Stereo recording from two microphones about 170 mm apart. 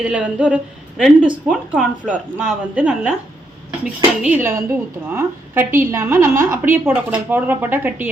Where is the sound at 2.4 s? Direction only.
5° right (ahead or behind).